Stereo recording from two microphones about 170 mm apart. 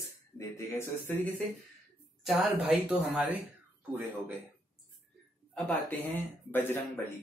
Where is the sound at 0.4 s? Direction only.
15° left (ahead or behind).